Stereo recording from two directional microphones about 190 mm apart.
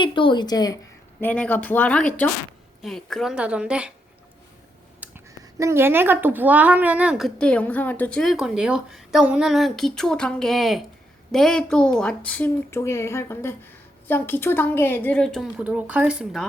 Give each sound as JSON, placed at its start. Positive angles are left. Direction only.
{"t": 0.0, "sound": "a woman's voice", "side_deg": 25}
{"t": 1.2, "sound": "speech", "side_deg": 10}
{"t": 4.9, "sound": "speech", "side_deg": -15}